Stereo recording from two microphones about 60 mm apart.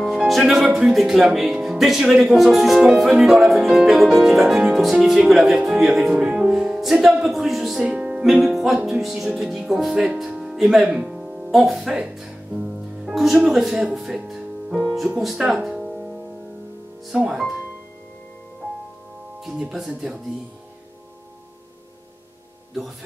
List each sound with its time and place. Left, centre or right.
0.3 s speech: centre
6.1 s speech: centre
6.5 s speech: centre
7.8 s music: centre
8.3 s speech: centre
13.0 s music: centre
13.5 s speech: centre
14.7 s music: centre
15.2 s speech: centre
17.1 s speech: centre